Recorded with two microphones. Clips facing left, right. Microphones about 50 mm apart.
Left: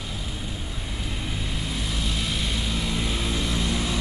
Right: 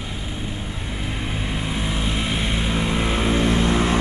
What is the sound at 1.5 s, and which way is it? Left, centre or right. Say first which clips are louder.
Vehicle: right 7 dB; right.